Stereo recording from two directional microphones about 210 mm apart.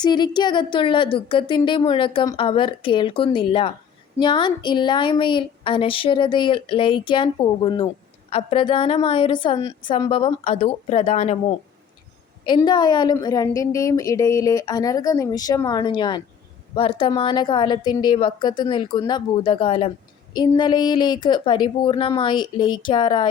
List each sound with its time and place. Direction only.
0.0 s a woman's voice: 20° left (ahead or behind)